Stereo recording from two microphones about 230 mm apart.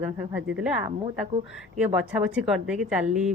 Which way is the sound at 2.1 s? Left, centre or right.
Centre.